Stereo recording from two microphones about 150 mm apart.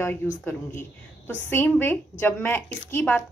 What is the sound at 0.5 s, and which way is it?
A woman's voice, 15° left (ahead or behind).